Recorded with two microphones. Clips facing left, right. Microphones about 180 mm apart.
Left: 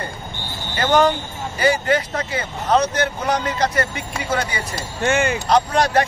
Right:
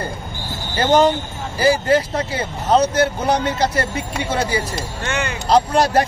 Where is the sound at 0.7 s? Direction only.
25° right (ahead or behind).